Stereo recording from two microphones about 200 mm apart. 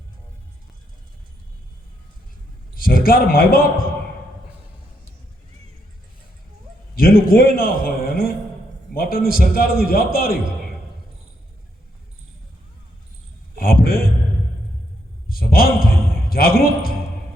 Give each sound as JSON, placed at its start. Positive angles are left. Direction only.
{"t": 2.7, "sound": "a man's voice", "side_deg": 45}
{"t": 6.9, "sound": "a man's voice", "side_deg": 45}
{"t": 13.6, "sound": "a man's voice", "side_deg": 45}
{"t": 15.3, "sound": "a man's voice", "side_deg": 50}